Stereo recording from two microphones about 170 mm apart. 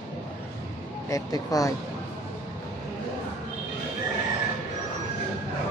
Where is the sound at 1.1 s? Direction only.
20° left (ahead or behind).